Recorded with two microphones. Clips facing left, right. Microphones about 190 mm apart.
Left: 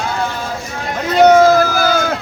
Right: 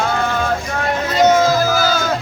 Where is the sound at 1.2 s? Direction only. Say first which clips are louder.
Left 5 dB; 60° left (ahead or behind).